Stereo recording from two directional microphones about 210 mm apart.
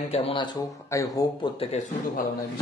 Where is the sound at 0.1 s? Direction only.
25° left (ahead or behind).